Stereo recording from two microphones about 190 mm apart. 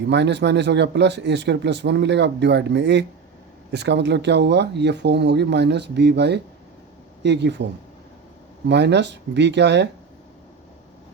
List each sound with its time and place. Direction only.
0.1 s speech: 65° right (ahead or behind)